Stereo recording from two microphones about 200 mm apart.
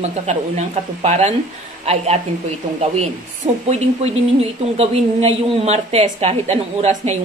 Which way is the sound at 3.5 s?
25° right (ahead or behind).